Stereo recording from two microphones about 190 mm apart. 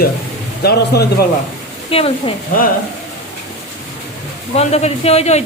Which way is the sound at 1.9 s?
30° left (ahead or behind).